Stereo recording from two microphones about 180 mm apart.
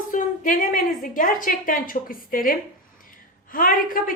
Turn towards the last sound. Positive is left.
turn(degrees=50)  # may be behind; listen again after turning